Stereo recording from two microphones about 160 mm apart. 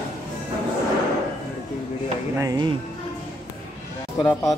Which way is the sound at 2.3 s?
20° right (ahead or behind).